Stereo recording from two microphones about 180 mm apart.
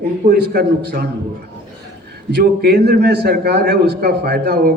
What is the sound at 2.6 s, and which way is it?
A man's voice, 65° right (ahead or behind).